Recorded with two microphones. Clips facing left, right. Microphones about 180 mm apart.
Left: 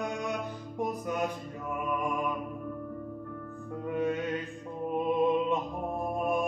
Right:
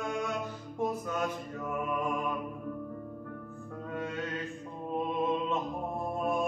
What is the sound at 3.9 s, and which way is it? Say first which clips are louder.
Music: left 7 dB; 15° left (ahead or behind).